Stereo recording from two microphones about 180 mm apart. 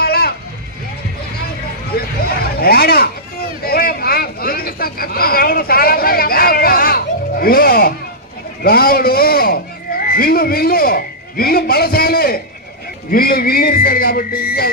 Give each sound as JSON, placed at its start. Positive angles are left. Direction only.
{"t": 0.0, "sound": "vehicle", "side_deg": 60}
{"t": 2.3, "sound": "a sound", "side_deg": 60}
{"t": 8.6, "sound": "a man's voice", "side_deg": 55}